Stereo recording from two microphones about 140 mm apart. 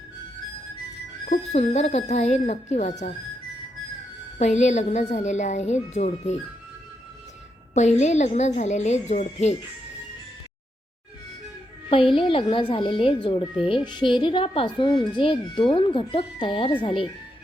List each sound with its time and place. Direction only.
1.3 s a woman's voice: 55° left (ahead or behind)
4.4 s a woman's voice: 55° left (ahead or behind)
7.7 s a woman's voice: 55° left (ahead or behind)
11.9 s speech: 40° left (ahead or behind)